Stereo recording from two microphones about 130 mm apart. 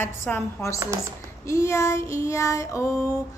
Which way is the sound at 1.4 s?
20° left (ahead or behind).